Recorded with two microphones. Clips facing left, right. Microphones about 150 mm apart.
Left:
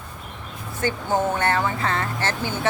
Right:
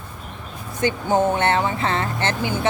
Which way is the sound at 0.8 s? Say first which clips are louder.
Right 4 dB; 20° right (ahead or behind).